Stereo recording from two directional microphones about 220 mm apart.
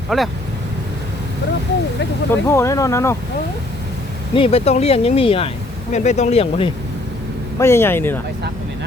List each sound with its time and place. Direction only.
0.1 s speech: centre (ahead or behind)
2.3 s speech: 10° left (ahead or behind)
4.4 s speech: 25° left (ahead or behind)
7.6 s speech: 10° left (ahead or behind)